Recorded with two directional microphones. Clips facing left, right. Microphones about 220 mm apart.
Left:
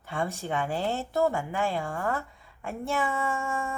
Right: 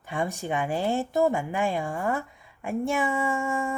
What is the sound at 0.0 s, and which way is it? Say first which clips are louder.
A woman's voice: right 2 dB; 15° right (ahead or behind).